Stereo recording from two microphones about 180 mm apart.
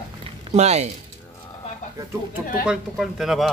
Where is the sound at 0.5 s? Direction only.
35° right (ahead or behind).